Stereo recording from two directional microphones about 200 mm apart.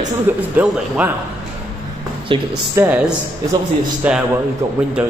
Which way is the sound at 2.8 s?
5° right (ahead or behind).